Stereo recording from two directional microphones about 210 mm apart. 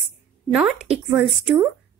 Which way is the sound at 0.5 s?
5° right (ahead or behind).